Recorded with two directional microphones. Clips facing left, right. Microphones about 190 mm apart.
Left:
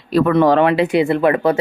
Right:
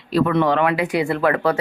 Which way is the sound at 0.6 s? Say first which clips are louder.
Left 5 dB; 25° left (ahead or behind).